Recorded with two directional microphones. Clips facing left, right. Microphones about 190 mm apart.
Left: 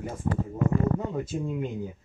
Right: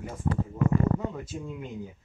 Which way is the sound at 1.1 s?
25° left (ahead or behind).